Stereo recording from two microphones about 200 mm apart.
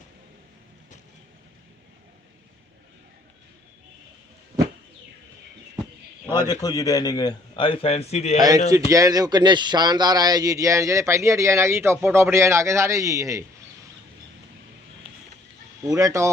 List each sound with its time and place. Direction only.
6.2 s a man's voice: 15° right (ahead or behind)
6.5 s a man's voice: 20° left (ahead or behind); by 8.4 s 35° left (ahead or behind)
8.4 s a man's voice: 20° right (ahead or behind)
15.8 s speech: 15° right (ahead or behind)